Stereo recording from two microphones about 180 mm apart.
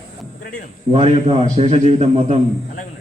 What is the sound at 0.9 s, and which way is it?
A man's voice, 35° right (ahead or behind).